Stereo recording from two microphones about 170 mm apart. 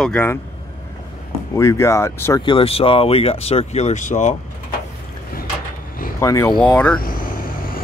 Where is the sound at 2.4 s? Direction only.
30° left (ahead or behind); by 4.3 s 45° left (ahead or behind).